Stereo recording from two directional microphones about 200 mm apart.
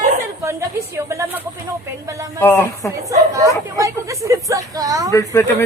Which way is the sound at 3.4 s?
15° right (ahead or behind).